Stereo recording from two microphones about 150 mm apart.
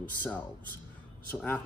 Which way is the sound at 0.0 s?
10° left (ahead or behind).